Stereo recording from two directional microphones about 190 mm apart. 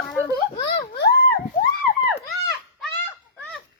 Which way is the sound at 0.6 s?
60° left (ahead or behind).